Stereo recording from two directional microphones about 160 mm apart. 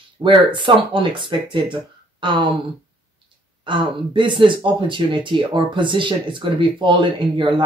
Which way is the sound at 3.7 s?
30° right (ahead or behind).